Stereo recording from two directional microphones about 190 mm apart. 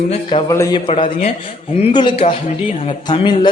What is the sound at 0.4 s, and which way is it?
Speech, 15° left (ahead or behind).